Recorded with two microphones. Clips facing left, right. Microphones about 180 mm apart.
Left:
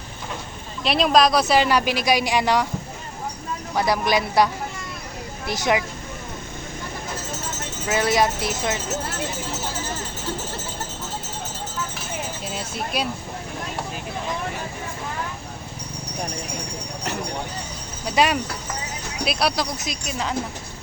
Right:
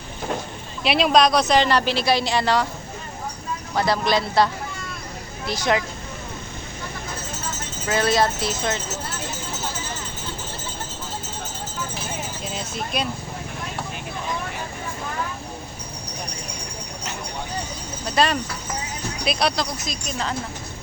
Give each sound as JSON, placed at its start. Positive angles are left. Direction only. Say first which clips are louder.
{"t": 0.9, "sound": "speech", "louder": "even", "side_deg": 0}
{"t": 3.8, "sound": "speech", "louder": "even", "side_deg": 15}
{"t": 5.5, "sound": "speech", "louder": "even", "side_deg": 20}
{"t": 7.9, "sound": "speech", "louder": "even", "side_deg": 15}
{"t": 12.5, "sound": "speech", "louder": "right 1 dB", "side_deg": 5}
{"t": 18.0, "sound": "speech", "louder": "left 1 dB", "side_deg": 10}